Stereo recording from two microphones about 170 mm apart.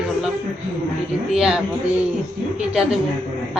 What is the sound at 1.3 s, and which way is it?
Speech, 5° right (ahead or behind).